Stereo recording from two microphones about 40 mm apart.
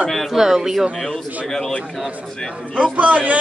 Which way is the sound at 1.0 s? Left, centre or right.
Centre.